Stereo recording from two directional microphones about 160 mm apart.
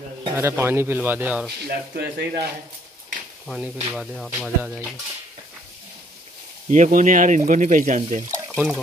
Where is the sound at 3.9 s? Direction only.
Centre (ahead or behind).